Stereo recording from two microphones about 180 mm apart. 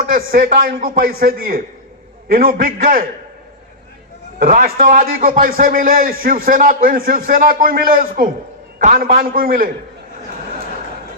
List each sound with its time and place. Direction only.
0.0 s a man's voice: 55° right (ahead or behind)
4.4 s a man's voice: 50° right (ahead or behind)